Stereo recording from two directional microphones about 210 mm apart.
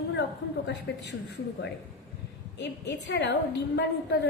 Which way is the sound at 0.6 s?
55° left (ahead or behind).